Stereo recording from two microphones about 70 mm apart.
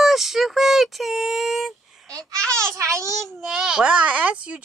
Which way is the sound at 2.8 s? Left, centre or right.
Right.